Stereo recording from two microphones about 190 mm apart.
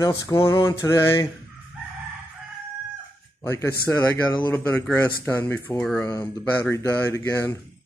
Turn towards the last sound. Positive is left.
turn(degrees=15)  # may be behind; listen again after turning